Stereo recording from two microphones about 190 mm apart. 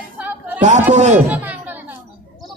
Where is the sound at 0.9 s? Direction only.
40° right (ahead or behind).